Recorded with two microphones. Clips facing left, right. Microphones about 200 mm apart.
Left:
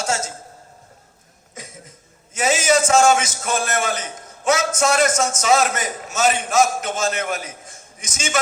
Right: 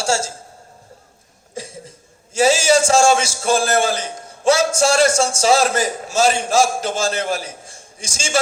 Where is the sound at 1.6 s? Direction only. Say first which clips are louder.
Right 8 dB; 30° right (ahead or behind).